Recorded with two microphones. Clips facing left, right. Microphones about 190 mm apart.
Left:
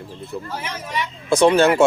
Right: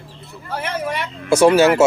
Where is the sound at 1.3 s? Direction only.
10° right (ahead or behind).